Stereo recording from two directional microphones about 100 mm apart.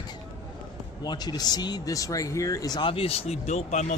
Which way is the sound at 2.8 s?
65° left (ahead or behind).